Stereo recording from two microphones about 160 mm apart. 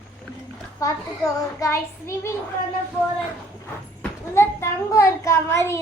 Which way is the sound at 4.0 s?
15° left (ahead or behind).